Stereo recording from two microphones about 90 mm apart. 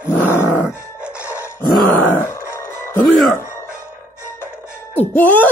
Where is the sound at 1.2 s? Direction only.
30° left (ahead or behind).